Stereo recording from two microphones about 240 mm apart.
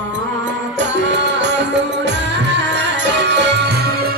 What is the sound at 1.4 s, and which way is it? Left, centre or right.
Music, right.